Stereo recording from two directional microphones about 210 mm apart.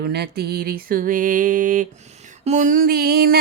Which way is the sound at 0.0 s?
50° right (ahead or behind).